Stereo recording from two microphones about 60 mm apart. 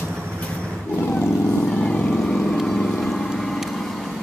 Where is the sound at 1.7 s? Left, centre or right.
Centre.